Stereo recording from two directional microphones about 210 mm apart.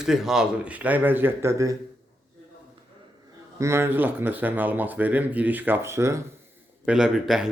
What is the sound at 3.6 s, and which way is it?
Speech, 15° right (ahead or behind).